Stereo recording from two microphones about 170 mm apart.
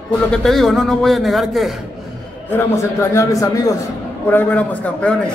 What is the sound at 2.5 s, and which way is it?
Speech, 15° left (ahead or behind).